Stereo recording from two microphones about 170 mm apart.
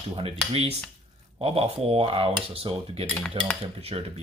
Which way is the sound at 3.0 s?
5° left (ahead or behind).